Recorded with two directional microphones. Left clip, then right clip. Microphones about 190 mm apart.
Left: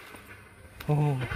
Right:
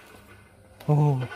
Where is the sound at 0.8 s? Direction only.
25° right (ahead or behind).